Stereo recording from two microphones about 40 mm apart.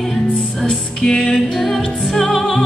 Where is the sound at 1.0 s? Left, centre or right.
Left.